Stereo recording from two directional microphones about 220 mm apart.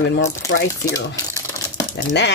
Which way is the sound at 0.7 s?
15° left (ahead or behind).